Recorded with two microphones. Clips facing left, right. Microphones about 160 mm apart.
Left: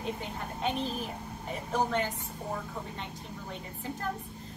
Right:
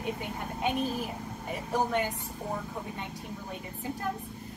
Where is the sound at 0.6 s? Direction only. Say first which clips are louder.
Right 2 dB; 15° right (ahead or behind).